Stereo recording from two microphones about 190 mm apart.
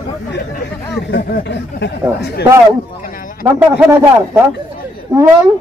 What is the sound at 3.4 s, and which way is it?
Speech, 10° right (ahead or behind).